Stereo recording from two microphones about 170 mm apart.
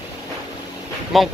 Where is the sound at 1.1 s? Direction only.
Centre (ahead or behind).